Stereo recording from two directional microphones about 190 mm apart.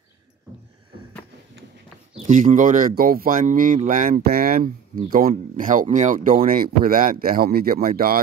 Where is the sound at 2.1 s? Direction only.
40° right (ahead or behind).